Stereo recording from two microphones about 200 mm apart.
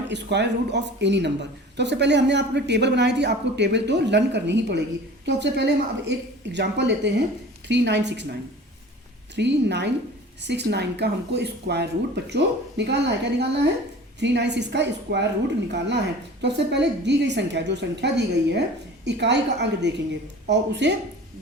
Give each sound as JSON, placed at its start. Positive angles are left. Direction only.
{"t": 0.1, "sound": "speech", "side_deg": -60}